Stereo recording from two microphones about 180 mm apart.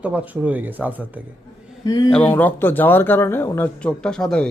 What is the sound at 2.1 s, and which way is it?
Speech, 5° left (ahead or behind).